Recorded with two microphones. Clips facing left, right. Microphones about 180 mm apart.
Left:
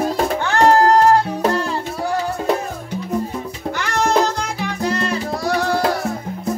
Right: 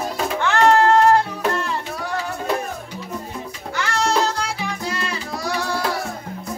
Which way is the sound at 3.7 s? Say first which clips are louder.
Left 3 dB; 50° left (ahead or behind).